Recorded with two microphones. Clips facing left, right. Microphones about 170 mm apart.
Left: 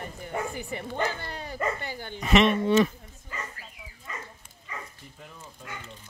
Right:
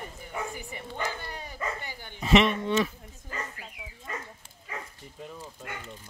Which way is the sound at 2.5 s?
5° left (ahead or behind).